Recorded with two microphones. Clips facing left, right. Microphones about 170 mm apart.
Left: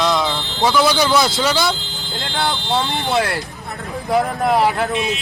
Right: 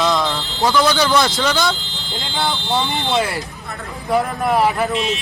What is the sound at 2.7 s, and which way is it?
Speech, centre (ahead or behind).